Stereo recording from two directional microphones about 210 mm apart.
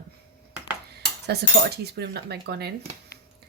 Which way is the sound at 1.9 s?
50° right (ahead or behind).